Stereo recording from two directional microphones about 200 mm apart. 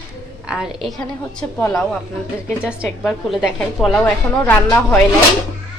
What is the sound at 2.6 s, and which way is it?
A woman's voice, 5° right (ahead or behind).